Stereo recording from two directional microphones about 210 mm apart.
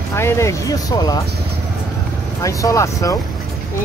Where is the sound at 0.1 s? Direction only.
15° left (ahead or behind).